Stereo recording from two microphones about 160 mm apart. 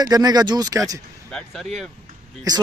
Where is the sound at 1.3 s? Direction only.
Centre (ahead or behind).